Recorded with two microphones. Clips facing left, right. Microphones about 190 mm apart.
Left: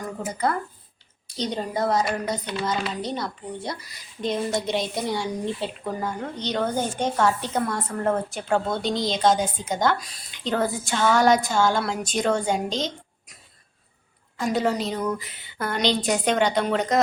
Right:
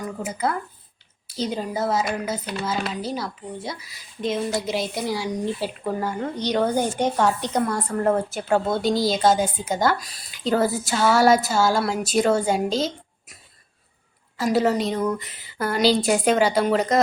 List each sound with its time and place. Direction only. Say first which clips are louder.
0.0 s speech: even; 5° right (ahead or behind)
7.7 s speech: right 3 dB; centre (ahead or behind)
14.3 s speech: right 3 dB; 5° right (ahead or behind)